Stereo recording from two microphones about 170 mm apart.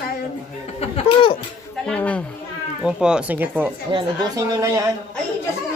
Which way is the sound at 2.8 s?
5° right (ahead or behind).